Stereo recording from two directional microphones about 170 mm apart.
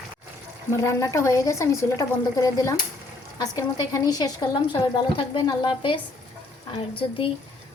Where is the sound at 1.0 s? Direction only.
20° left (ahead or behind).